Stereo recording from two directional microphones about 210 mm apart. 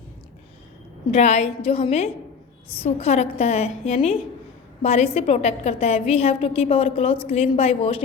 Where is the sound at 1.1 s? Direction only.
30° left (ahead or behind).